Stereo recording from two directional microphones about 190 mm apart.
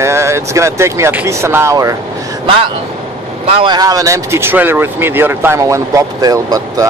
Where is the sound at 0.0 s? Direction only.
15° right (ahead or behind).